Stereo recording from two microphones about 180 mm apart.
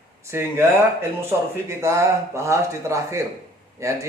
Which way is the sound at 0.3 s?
15° right (ahead or behind).